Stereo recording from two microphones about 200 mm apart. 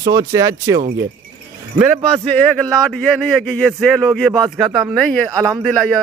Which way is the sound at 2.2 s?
5° left (ahead or behind).